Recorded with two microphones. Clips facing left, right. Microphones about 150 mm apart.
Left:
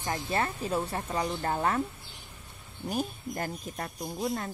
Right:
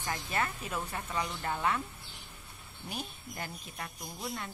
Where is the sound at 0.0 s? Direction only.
30° left (ahead or behind).